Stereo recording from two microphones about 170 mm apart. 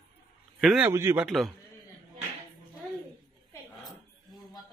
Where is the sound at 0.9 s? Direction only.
15° right (ahead or behind).